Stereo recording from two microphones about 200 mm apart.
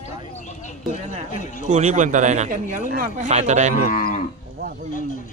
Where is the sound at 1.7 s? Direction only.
40° right (ahead or behind).